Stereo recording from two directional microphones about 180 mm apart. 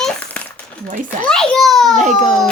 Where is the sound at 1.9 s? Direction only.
40° right (ahead or behind).